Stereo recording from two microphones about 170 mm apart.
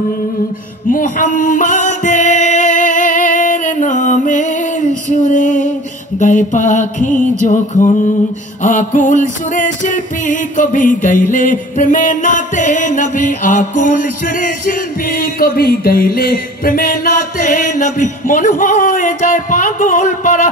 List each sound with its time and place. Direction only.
0.9 s music: 50° left (ahead or behind)